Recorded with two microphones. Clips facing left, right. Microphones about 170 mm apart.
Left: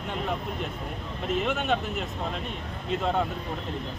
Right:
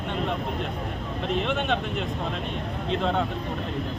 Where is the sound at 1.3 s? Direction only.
5° left (ahead or behind).